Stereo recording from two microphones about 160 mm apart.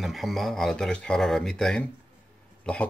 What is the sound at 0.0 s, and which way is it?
Speech, centre (ahead or behind).